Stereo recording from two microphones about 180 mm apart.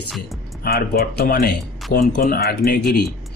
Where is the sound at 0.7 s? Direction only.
60° left (ahead or behind).